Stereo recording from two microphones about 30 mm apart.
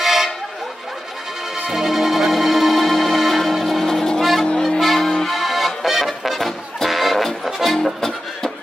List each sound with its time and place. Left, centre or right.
0.0 s vehicle horn: centre
1.7 s music: centre
3.8 s vehicle: centre
4.2 s music: centre